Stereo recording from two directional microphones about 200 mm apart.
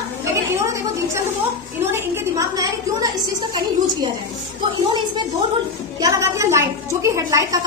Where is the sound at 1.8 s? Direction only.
10° right (ahead or behind).